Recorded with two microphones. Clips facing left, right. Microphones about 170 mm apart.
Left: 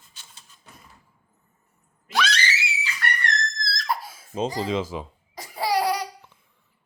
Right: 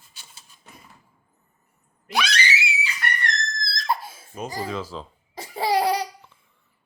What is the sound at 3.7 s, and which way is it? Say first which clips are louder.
Giggle: right 3 dB; 25° right (ahead or behind).